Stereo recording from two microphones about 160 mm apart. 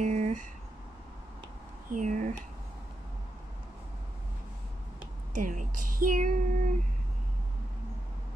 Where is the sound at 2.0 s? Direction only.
50° right (ahead or behind).